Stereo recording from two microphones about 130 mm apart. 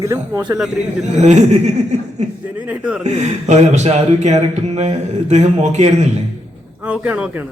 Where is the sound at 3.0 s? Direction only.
65° right (ahead or behind).